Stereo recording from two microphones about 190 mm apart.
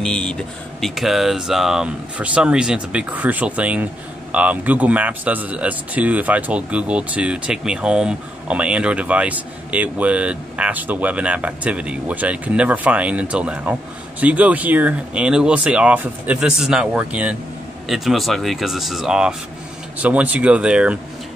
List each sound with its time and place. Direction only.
0.0 s speech: 5° left (ahead or behind)